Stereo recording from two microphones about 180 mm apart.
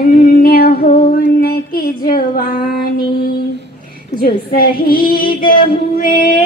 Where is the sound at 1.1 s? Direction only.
55° left (ahead or behind).